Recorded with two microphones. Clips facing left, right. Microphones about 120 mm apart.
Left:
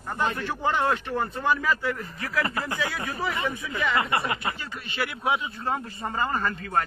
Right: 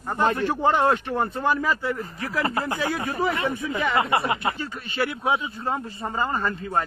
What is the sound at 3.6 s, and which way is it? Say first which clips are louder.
Speech: right 3 dB; 25° right (ahead or behind).